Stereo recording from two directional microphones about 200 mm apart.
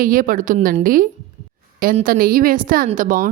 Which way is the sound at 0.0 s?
45° right (ahead or behind).